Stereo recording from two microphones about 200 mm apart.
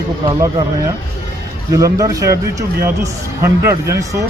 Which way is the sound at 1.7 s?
15° right (ahead or behind).